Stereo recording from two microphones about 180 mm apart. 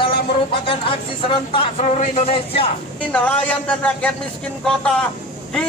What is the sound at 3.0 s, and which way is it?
A man's voice, 5° left (ahead or behind).